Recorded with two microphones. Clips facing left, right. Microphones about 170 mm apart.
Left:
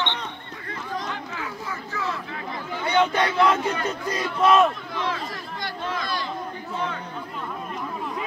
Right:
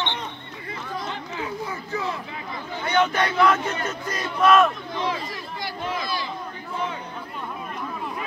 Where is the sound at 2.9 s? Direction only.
20° left (ahead or behind).